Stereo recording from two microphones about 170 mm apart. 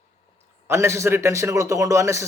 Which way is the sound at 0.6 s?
15° right (ahead or behind).